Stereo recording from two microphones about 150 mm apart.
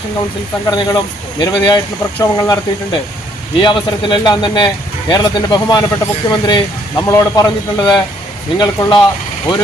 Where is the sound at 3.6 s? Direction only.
30° left (ahead or behind).